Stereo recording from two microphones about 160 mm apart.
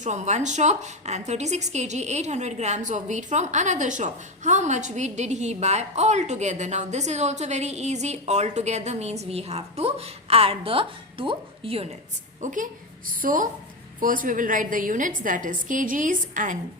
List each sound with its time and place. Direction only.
0.0 s a woman's voice: 45° right (ahead or behind)
12.4 s a woman's voice: 50° right (ahead or behind)